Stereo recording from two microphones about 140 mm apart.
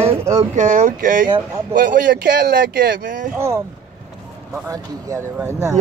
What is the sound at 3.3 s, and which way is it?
Speech, 20° right (ahead or behind).